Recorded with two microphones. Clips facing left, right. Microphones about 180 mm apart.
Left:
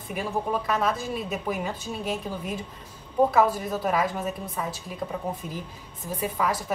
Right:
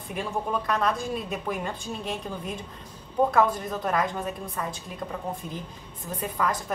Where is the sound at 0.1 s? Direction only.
5° left (ahead or behind).